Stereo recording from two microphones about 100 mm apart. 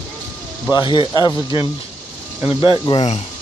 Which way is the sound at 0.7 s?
50° left (ahead or behind).